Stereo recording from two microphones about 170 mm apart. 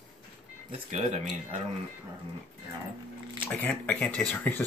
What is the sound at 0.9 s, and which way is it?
Speech, 45° right (ahead or behind).